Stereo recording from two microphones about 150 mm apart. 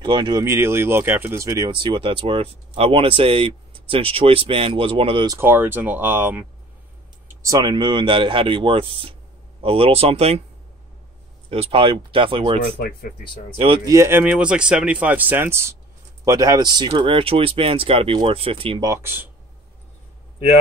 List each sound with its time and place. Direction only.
0.0 s speech: 30° right (ahead or behind)
5.3 s speech: 15° right (ahead or behind)
7.4 s speech: 25° right (ahead or behind); by 10.4 s 45° right (ahead or behind)
11.5 s speech: 35° right (ahead or behind)
12.6 s speech: 85° left
13.8 s speech: 20° right (ahead or behind); by 18.8 s 40° right (ahead or behind)
18.8 s speech: 20° right (ahead or behind)